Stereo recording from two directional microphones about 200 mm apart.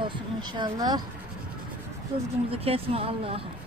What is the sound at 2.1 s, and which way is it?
Speech, 25° right (ahead or behind).